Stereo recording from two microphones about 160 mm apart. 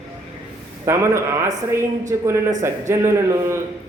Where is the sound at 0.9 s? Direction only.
15° right (ahead or behind).